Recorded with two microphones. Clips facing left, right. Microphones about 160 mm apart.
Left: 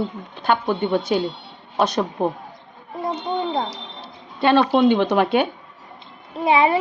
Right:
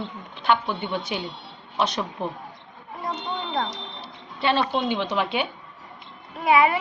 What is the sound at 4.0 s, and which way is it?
Speech, 55° left (ahead or behind).